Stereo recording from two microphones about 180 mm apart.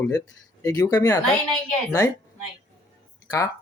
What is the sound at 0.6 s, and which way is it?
Speech, 20° left (ahead or behind).